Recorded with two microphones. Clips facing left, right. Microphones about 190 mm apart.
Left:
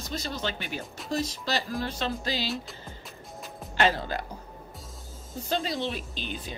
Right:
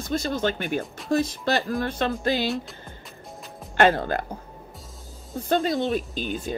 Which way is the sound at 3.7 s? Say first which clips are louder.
Right 6 dB; 55° right (ahead or behind).